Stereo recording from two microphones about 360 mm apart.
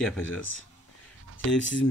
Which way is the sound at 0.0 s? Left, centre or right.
Centre.